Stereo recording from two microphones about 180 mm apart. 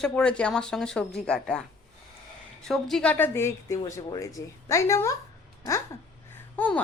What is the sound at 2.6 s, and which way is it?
Speech, centre (ahead or behind).